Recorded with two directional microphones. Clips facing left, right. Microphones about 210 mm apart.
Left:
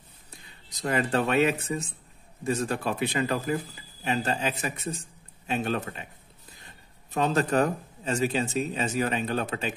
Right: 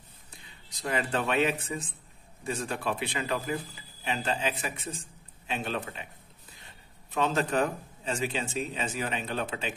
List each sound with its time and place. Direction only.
0.7 s speech: 40° left (ahead or behind)
7.1 s speech: 40° left (ahead or behind)